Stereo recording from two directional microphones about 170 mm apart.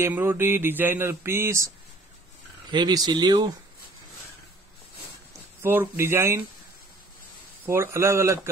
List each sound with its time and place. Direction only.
0.0 s mantra: 15° right (ahead or behind)
2.7 s speech: 25° right (ahead or behind)
5.6 s mantra: 15° right (ahead or behind)
7.6 s mantra: 15° right (ahead or behind)